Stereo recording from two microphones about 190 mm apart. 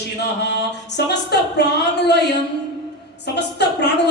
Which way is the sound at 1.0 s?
60° left (ahead or behind).